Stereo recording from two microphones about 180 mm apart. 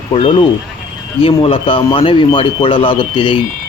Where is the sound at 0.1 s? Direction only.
30° left (ahead or behind).